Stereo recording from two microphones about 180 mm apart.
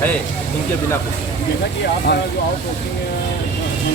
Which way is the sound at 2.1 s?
70° left (ahead or behind).